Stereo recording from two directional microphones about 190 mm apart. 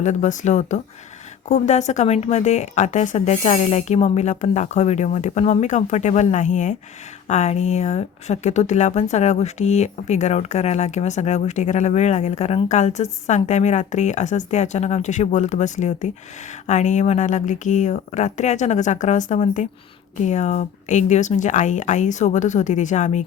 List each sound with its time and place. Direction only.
0.0 s a woman's voice: 40° left (ahead or behind)